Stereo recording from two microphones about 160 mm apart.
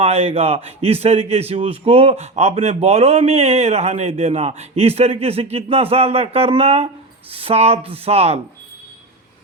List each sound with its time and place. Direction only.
0.0 s speech: 40° right (ahead or behind)